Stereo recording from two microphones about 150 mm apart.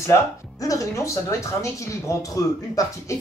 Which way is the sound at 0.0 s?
20° left (ahead or behind).